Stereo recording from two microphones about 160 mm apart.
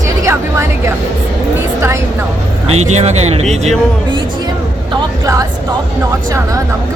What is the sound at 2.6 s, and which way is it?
Speech, 45° right (ahead or behind).